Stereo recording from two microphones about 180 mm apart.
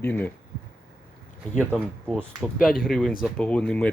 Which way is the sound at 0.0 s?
10° left (ahead or behind).